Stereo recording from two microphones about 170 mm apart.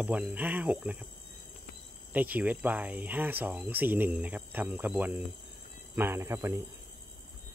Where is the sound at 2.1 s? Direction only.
10° right (ahead or behind).